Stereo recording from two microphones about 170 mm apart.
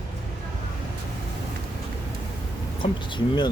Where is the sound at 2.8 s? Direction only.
30° left (ahead or behind).